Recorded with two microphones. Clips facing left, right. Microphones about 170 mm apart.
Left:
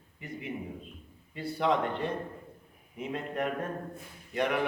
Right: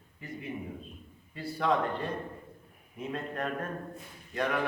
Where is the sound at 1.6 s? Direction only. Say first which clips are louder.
Left 1 dB; 20° left (ahead or behind).